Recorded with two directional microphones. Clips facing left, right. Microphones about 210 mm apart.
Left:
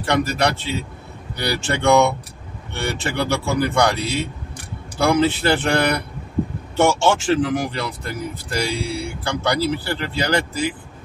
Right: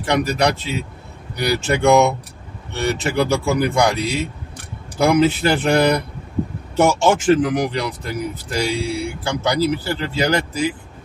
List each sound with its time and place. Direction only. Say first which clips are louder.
0.0 s speech: right 2 dB; 15° right (ahead or behind)
6.8 s speech: right 1 dB; 15° right (ahead or behind)